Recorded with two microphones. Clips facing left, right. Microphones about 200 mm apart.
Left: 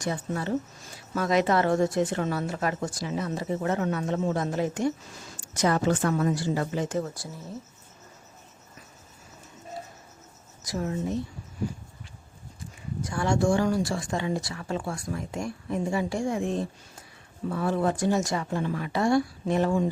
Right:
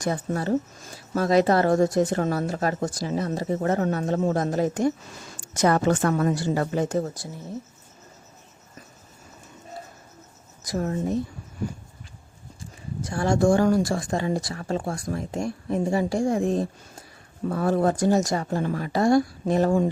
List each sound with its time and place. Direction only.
0.0 s a woman's voice: 40° right (ahead or behind)
6.8 s speech: 35° right (ahead or behind)
10.7 s a woman's voice: 45° right (ahead or behind)
13.1 s speech: 35° right (ahead or behind)